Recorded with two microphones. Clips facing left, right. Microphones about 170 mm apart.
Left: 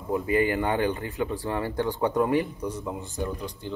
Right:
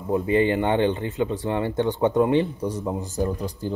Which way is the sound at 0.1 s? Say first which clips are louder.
Right 4 dB; 25° right (ahead or behind).